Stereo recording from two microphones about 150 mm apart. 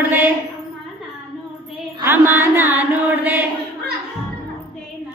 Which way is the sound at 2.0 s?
15° right (ahead or behind).